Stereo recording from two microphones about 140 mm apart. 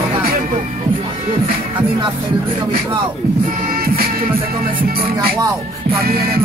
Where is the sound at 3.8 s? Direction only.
90° right.